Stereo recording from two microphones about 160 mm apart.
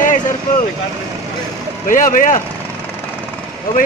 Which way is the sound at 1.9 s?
55° left (ahead or behind).